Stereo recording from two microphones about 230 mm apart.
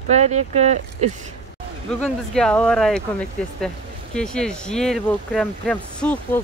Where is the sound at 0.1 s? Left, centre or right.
Right.